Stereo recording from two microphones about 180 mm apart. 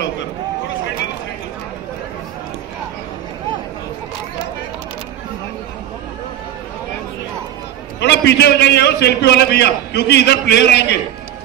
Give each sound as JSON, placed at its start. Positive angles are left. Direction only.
{"t": 8.0, "sound": "a man's voice", "side_deg": 70}